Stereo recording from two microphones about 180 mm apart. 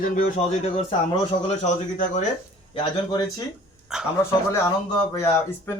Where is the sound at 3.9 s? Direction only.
5° right (ahead or behind).